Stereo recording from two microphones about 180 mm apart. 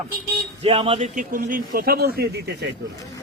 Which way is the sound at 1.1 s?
50° right (ahead or behind).